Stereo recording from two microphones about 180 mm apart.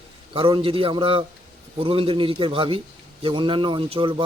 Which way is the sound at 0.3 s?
30° right (ahead or behind).